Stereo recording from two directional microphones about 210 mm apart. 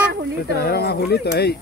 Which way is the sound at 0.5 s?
50° left (ahead or behind).